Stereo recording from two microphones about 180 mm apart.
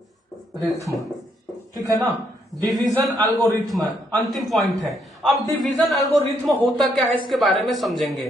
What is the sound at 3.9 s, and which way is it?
Speech, centre (ahead or behind).